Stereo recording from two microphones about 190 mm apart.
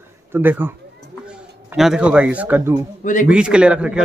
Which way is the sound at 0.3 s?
10° right (ahead or behind).